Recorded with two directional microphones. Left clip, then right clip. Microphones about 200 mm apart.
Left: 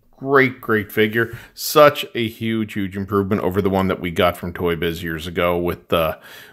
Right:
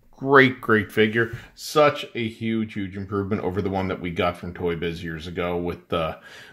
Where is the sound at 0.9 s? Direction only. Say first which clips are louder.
Left 2 dB; 25° left (ahead or behind).